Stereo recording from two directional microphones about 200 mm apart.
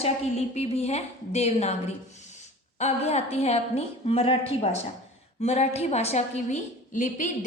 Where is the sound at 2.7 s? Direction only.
35° left (ahead or behind).